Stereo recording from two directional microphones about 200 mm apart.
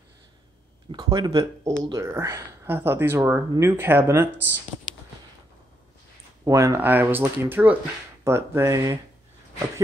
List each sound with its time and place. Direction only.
0.9 s speech: 20° right (ahead or behind)
6.4 s speech: 15° right (ahead or behind)